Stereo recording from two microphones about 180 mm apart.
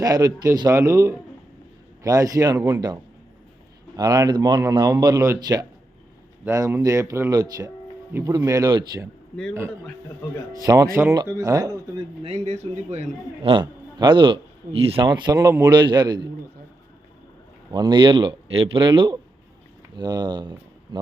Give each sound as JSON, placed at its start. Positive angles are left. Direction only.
{"t": 0.0, "sound": "a man's voice", "side_deg": -20}
{"t": 3.9, "sound": "a man's voice", "side_deg": -20}
{"t": 10.6, "sound": "a man's voice", "side_deg": -20}
{"t": 12.2, "sound": "a man's voice", "side_deg": -35}
{"t": 17.7, "sound": "a man's voice", "side_deg": -25}